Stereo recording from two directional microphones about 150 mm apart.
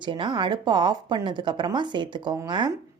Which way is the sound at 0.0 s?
30° right (ahead or behind).